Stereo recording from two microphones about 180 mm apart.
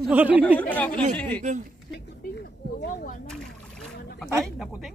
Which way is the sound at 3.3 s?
Centre (ahead or behind).